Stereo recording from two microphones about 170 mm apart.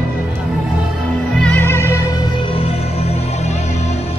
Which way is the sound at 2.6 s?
35° left (ahead or behind).